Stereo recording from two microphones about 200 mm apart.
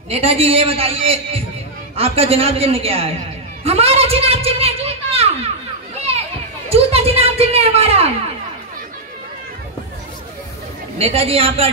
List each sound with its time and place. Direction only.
0.1 s a man's voice: 30° right (ahead or behind)
6.7 s a sound: 30° right (ahead or behind)
11.0 s a man's voice: 30° right (ahead or behind)